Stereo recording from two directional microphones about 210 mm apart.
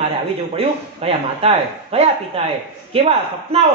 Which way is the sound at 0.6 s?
30° right (ahead or behind).